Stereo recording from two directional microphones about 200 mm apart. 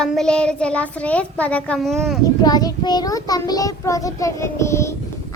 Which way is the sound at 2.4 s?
20° left (ahead or behind).